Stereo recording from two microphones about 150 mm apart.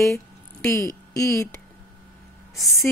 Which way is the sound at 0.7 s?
20° left (ahead or behind).